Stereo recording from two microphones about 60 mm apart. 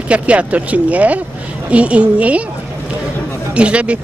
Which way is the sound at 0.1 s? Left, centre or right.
Right.